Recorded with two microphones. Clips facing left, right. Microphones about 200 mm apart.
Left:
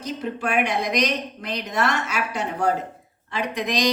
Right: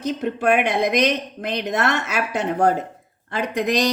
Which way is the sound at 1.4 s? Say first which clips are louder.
Right 3 dB; 50° right (ahead or behind).